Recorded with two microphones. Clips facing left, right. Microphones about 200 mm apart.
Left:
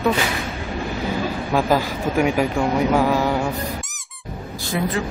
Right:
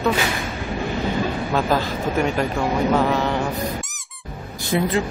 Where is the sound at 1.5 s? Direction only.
10° left (ahead or behind).